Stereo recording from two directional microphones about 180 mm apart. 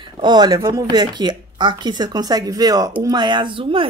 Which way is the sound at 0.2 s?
25° right (ahead or behind).